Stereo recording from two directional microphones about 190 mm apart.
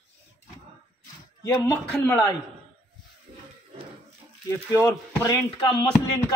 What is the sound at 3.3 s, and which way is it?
Crowd, 25° right (ahead or behind).